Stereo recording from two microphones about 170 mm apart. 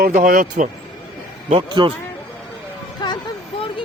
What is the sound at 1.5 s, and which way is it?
Speech, 25° right (ahead or behind).